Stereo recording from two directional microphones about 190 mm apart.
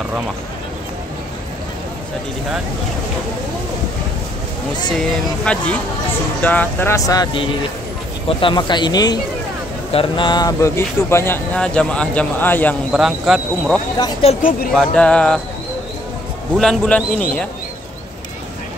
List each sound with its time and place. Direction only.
4.9 s speech: 5° left (ahead or behind)
12.9 s speech: centre (ahead or behind)
13.9 s speech: 20° left (ahead or behind)
14.7 s speech: centre (ahead or behind)
16.5 s speech: 5° left (ahead or behind)